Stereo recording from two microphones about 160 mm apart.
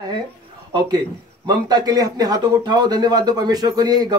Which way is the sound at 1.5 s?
25° right (ahead or behind).